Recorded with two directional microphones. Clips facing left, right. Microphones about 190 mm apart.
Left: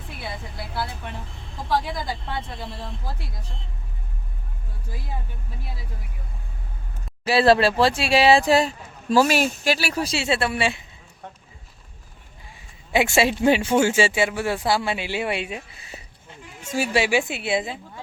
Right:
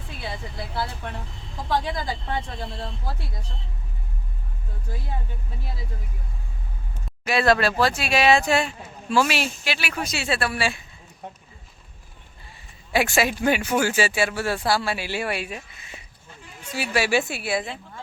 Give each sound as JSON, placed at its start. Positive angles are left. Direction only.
{"t": 7.3, "sound": "speech", "side_deg": 30}
{"t": 12.9, "sound": "speech", "side_deg": 25}
{"t": 16.6, "sound": "speech", "side_deg": 45}
{"t": 16.9, "sound": "speech", "side_deg": 20}